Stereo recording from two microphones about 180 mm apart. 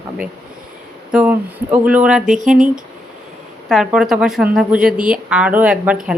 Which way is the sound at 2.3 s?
45° right (ahead or behind).